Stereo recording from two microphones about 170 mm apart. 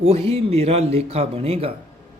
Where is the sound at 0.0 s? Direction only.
35° right (ahead or behind).